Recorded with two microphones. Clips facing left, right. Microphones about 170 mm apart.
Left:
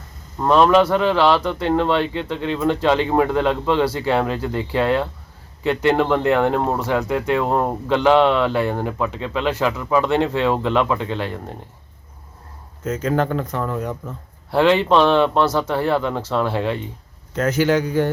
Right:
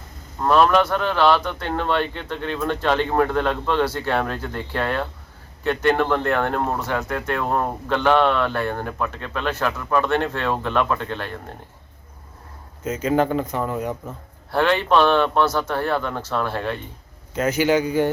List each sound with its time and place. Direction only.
0.3 s a man's voice: 5° left (ahead or behind)
12.8 s speech: 10° right (ahead or behind)
14.5 s speech: 5° left (ahead or behind)